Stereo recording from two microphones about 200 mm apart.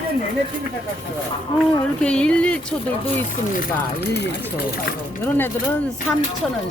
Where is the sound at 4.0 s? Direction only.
55° left (ahead or behind).